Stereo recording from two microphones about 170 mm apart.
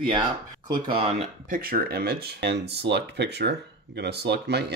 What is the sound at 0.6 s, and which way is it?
Speech, 25° right (ahead or behind).